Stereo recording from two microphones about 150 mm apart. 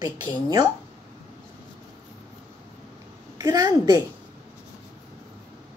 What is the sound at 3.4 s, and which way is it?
Speech, 25° right (ahead or behind).